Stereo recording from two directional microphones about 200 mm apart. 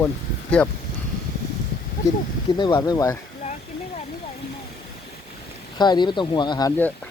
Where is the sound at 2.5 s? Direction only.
20° left (ahead or behind).